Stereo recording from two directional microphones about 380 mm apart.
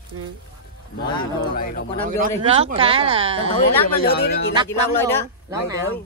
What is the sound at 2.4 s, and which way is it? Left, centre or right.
Speech, centre.